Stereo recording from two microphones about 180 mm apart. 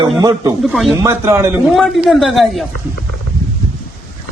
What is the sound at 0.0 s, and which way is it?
Speech, 20° right (ahead or behind).